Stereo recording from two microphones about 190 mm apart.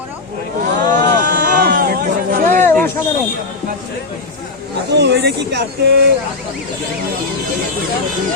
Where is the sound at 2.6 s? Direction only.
10° left (ahead or behind).